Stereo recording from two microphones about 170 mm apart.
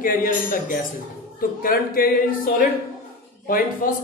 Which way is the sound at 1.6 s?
55° left (ahead or behind).